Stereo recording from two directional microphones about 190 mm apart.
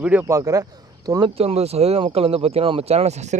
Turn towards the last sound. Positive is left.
turn(degrees=-35)  # may be behind; listen again after turning